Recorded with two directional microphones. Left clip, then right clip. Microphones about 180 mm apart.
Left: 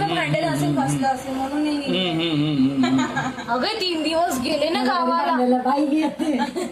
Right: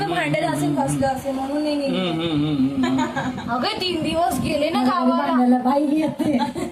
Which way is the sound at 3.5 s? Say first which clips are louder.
Even; 25° left (ahead or behind).